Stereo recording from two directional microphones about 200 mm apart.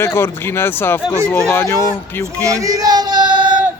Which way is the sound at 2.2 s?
15° right (ahead or behind).